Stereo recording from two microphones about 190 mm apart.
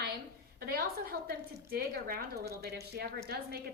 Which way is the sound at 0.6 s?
55° right (ahead or behind).